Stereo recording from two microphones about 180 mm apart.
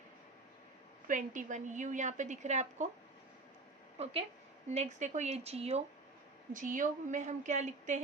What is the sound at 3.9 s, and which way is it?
A woman's voice, 35° right (ahead or behind).